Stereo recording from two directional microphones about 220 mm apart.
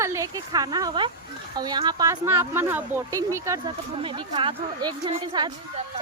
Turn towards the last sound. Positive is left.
turn(degrees=-20)  # may be behind; listen again after turning